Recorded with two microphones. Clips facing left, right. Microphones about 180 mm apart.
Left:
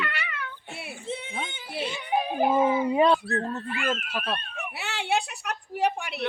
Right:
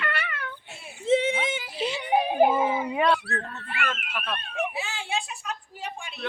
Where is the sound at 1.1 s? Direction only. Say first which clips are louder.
Right 12 dB; 90° right.